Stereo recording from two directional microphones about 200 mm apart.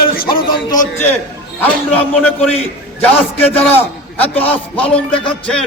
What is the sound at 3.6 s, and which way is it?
A man's voice, 10° left (ahead or behind).